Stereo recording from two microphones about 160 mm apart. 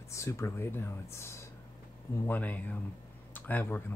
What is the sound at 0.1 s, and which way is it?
Speech, 20° left (ahead or behind).